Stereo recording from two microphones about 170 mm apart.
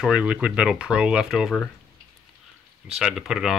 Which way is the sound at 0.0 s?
5° right (ahead or behind).